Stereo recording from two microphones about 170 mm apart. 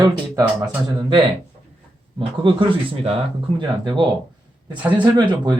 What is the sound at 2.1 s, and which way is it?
Speech, 30° right (ahead or behind).